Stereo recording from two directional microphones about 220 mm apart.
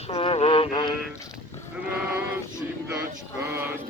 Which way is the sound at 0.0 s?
25° left (ahead or behind).